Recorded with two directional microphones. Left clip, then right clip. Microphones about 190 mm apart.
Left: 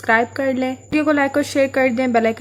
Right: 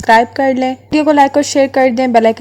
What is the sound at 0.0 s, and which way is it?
Speech, 30° right (ahead or behind).